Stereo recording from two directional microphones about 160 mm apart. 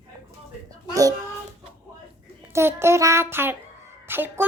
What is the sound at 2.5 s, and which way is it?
A child's voice, 15° right (ahead or behind).